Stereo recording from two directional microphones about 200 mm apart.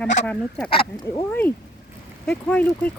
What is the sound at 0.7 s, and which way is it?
Speech, 20° left (ahead or behind).